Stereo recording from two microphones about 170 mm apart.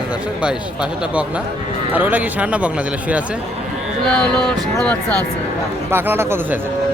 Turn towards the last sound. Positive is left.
turn(degrees=-15)  # may be behind; listen again after turning